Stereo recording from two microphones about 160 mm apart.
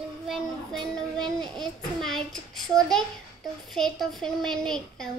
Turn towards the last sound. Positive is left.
turn(degrees=5)  # may be behind; listen again after turning